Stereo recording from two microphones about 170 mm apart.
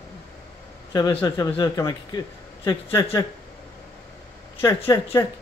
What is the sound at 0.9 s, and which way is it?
A man's voice, 25° left (ahead or behind).